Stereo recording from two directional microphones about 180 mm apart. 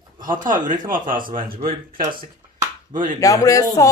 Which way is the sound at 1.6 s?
50° right (ahead or behind).